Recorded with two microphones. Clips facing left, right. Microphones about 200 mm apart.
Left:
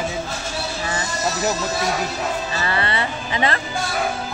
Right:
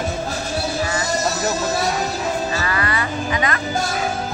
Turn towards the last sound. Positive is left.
turn(degrees=30)  # may be behind; listen again after turning